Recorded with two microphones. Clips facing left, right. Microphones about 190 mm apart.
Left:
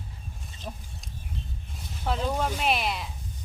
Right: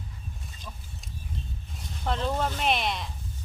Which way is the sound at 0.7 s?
45° left (ahead or behind).